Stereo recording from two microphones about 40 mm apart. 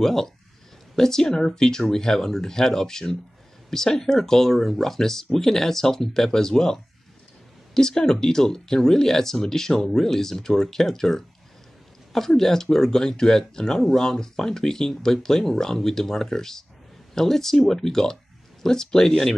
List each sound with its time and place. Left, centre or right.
0.0 s speech: centre